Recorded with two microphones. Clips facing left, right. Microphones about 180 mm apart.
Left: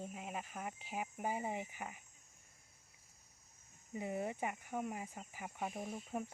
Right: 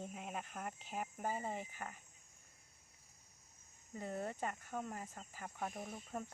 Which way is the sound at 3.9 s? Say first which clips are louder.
Left 3 dB; 15° left (ahead or behind).